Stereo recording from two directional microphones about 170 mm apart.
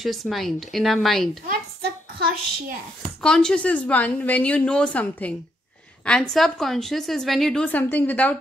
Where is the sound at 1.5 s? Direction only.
65° right (ahead or behind).